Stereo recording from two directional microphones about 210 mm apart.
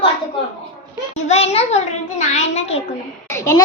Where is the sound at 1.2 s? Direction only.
30° left (ahead or behind).